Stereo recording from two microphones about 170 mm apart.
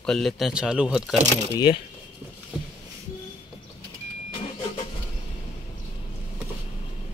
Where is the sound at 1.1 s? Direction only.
40° right (ahead or behind).